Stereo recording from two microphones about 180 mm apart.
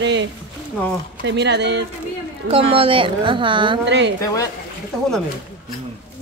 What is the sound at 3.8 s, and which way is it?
Speech, 75° right (ahead or behind).